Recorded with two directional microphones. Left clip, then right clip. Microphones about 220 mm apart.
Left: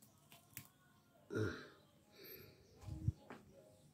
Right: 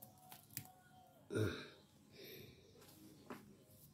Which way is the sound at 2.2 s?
5° right (ahead or behind).